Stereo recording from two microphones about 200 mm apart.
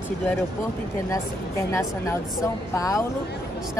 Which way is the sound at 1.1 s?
15° left (ahead or behind).